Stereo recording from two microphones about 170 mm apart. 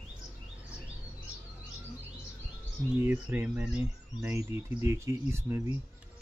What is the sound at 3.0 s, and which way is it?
Speech, 10° right (ahead or behind).